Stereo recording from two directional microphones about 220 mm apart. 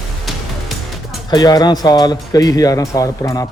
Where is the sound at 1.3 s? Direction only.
20° left (ahead or behind).